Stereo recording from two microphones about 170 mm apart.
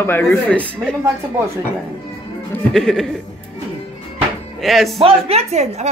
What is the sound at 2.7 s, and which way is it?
Speech, centre (ahead or behind).